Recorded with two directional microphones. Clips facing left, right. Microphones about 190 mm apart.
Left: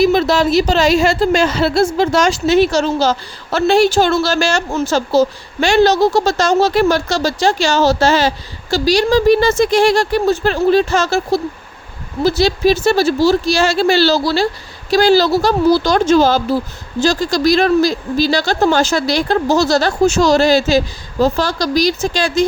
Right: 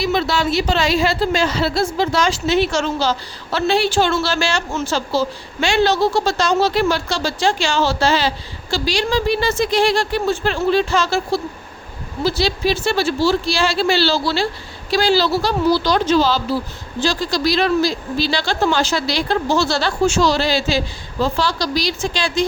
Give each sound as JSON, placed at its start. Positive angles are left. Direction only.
{"t": 0.1, "sound": "a woman's voice", "side_deg": 45}